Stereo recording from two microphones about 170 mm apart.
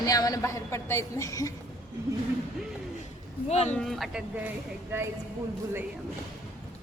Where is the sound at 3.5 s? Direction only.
40° left (ahead or behind).